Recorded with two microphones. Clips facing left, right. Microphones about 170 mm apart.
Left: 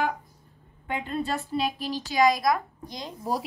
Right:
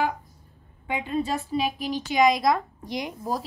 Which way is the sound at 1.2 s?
10° right (ahead or behind).